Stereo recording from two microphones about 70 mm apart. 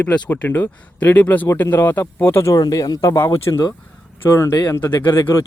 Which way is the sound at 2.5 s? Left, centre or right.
Left.